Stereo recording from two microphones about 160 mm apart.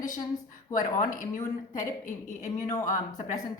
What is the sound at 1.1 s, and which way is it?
A woman's voice, 55° left (ahead or behind).